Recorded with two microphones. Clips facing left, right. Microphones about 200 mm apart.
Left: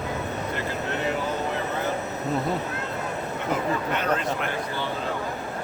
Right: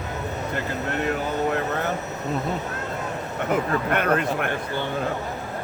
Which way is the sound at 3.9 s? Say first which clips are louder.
Right 3 dB; 60° right (ahead or behind).